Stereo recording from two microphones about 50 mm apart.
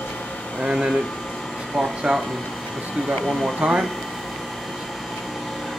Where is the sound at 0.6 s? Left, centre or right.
Centre.